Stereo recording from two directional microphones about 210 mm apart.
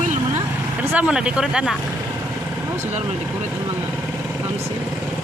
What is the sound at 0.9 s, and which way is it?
Speech, 5° right (ahead or behind).